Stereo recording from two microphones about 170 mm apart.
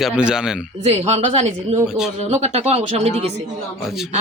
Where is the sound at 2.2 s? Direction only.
40° right (ahead or behind).